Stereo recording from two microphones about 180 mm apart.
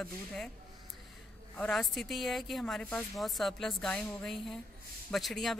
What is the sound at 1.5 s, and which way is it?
A woman's voice, 5° left (ahead or behind).